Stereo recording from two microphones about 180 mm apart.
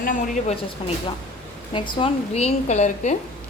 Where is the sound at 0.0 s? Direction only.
50° left (ahead or behind).